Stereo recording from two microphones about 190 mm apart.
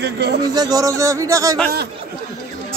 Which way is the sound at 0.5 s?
20° right (ahead or behind).